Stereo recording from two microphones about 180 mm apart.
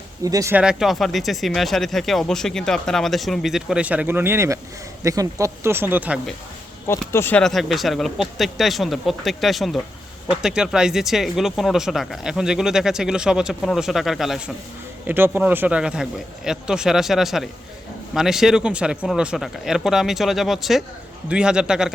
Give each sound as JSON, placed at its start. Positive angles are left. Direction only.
{"t": 0.3, "sound": "speech", "side_deg": -15}
{"t": 0.6, "sound": "speech", "side_deg": -5}
{"t": 7.1, "sound": "speech", "side_deg": 10}